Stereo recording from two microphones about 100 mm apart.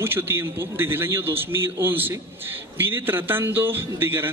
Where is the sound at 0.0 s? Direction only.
25° right (ahead or behind).